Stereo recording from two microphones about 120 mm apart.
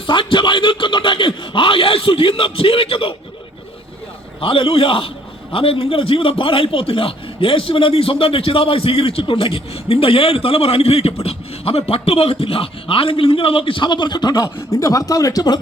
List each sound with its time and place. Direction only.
0.1 s a man's voice: 45° left (ahead or behind)
4.4 s a man's voice: 50° left (ahead or behind)